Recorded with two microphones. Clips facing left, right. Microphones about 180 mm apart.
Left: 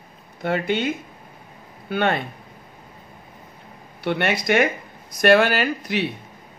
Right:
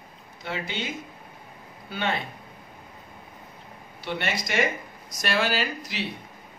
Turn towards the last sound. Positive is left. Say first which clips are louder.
# left 6 dB
turn(degrees=60)  # may be behind; listen again after turning